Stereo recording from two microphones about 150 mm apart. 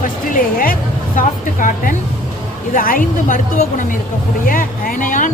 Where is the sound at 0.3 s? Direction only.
65° left (ahead or behind).